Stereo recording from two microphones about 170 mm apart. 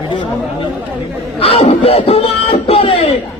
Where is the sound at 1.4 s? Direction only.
35° left (ahead or behind).